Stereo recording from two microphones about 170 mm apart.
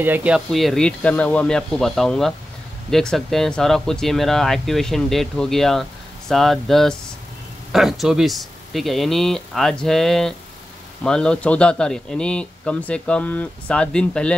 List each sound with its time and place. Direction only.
0.0 s speech: 10° right (ahead or behind); by 14.3 s 5° left (ahead or behind)